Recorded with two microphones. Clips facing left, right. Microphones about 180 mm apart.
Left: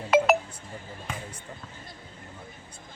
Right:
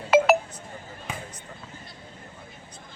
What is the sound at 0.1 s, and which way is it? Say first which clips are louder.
Chink: right 2 dB; 5° right (ahead or behind).